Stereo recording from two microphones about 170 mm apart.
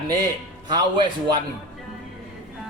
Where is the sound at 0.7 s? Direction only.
30° right (ahead or behind).